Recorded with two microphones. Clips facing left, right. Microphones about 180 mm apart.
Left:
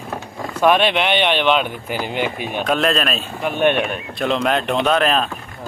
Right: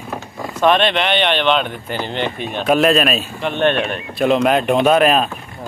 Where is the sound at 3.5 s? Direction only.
10° left (ahead or behind).